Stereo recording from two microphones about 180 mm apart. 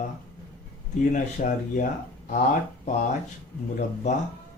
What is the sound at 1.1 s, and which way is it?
Speech, 45° left (ahead or behind).